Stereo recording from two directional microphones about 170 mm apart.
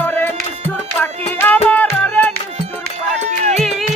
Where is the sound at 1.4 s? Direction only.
10° left (ahead or behind).